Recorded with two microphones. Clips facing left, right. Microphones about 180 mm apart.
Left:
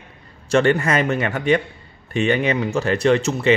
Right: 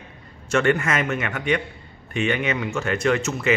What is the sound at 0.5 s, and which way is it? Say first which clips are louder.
A man's voice: left 4 dB; 35° left (ahead or behind).